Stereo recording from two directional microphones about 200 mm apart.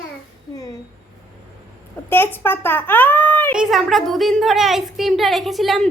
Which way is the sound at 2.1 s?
10° left (ahead or behind).